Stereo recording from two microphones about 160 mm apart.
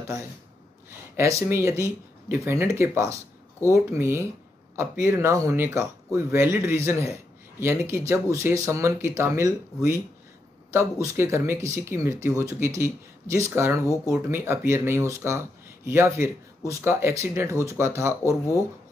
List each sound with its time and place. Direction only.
0.8 s speech: 15° right (ahead or behind)